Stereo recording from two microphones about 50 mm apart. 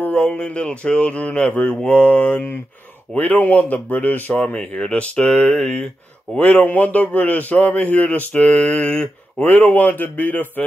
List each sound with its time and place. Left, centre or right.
0.1 s a man's voice: left
4.6 s a sound: centre
6.3 s a man's voice: left
9.4 s a man's voice: left